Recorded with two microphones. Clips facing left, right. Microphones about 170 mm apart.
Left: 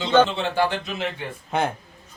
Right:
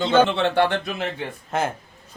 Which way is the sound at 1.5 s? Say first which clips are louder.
Left 1 dB; centre (ahead or behind).